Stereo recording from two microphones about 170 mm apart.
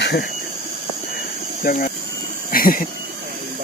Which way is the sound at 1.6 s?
60° left (ahead or behind).